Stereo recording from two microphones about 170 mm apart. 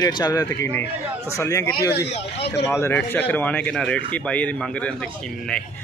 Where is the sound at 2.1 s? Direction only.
40° left (ahead or behind).